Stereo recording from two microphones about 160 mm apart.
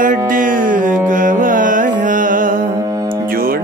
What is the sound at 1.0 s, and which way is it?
Carnatic music, 55° right (ahead or behind).